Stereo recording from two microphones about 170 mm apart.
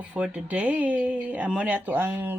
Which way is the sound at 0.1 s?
10° right (ahead or behind).